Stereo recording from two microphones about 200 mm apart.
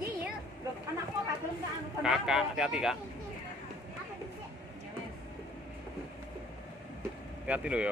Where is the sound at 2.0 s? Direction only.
5° right (ahead or behind).